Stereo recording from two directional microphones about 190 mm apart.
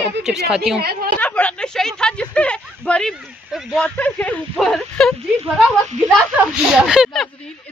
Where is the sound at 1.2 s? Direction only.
5° left (ahead or behind).